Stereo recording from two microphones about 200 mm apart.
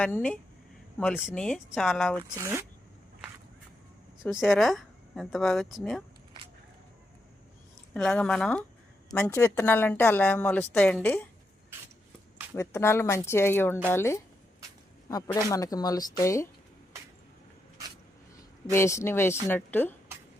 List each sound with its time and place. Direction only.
0.0 s a woman's voice: 5° left (ahead or behind)
2.3 s speech: 15° right (ahead or behind)
4.2 s speech: centre (ahead or behind)
7.9 s a woman's voice: 5° left (ahead or behind)
12.5 s a woman's voice: 15° left (ahead or behind)
18.7 s a woman's voice: 15° left (ahead or behind)